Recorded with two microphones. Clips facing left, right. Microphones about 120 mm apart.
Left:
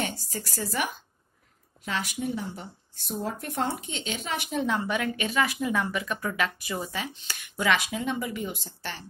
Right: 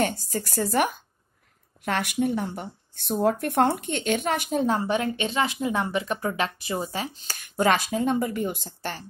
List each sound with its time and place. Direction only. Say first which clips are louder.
0.0 s speech: right 7 dB; 50° right (ahead or behind)